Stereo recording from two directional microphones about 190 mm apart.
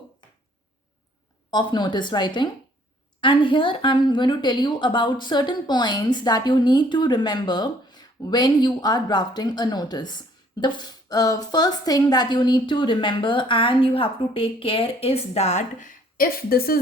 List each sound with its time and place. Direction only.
1.5 s a woman's voice: 20° left (ahead or behind); by 16.8 s 50° left (ahead or behind)